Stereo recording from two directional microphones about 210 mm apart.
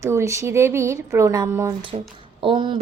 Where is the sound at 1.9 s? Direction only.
25° right (ahead or behind).